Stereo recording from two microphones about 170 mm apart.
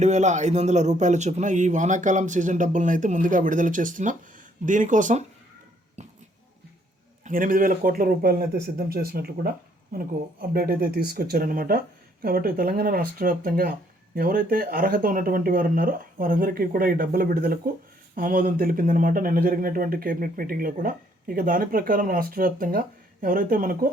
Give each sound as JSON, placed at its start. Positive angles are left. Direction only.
{"t": 0.0, "sound": "speech", "side_deg": -45}
{"t": 6.0, "sound": "a sound", "side_deg": -40}
{"t": 7.3, "sound": "speech", "side_deg": -55}
{"t": 10.5, "sound": "speech", "side_deg": -60}